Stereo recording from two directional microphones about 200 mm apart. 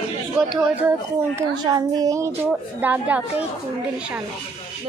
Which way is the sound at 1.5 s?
20° right (ahead or behind).